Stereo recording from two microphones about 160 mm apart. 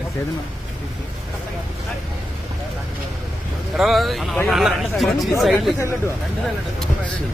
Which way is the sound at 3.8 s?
Centre (ahead or behind).